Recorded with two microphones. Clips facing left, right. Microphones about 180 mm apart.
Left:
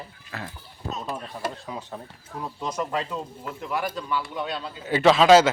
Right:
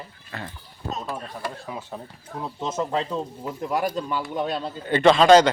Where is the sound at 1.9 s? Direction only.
15° right (ahead or behind); by 4.6 s 45° right (ahead or behind).